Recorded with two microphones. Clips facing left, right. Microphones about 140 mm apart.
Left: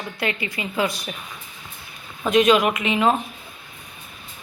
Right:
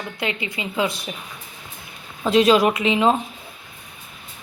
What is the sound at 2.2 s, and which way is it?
Speech, 30° right (ahead or behind).